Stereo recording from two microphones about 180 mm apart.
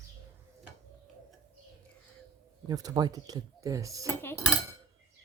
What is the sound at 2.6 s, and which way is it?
Speech, 20° right (ahead or behind).